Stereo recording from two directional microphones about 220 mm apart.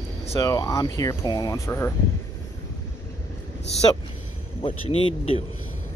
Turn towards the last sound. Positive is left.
turn(degrees=25)  # may be behind; listen again after turning